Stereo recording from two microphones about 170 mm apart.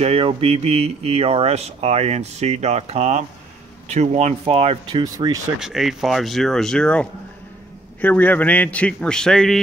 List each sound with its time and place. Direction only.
0.0 s speech: 35° right (ahead or behind)
5.0 s speech: 20° right (ahead or behind)
5.6 s a man's voice: centre (ahead or behind)